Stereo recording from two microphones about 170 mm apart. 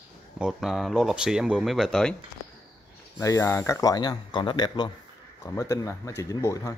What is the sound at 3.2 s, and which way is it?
Speech, 15° left (ahead or behind).